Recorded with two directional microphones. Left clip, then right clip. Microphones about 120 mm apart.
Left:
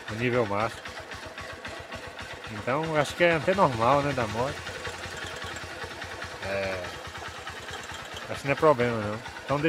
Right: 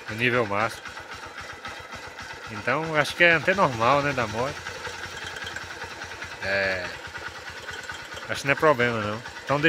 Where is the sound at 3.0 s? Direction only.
15° left (ahead or behind).